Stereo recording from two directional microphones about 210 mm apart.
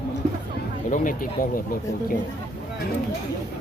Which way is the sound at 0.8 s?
40° left (ahead or behind).